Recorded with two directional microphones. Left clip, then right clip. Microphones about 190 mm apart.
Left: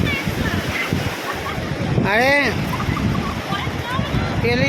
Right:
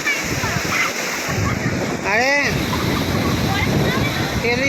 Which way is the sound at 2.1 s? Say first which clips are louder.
Left 1 dB; 20° left (ahead or behind).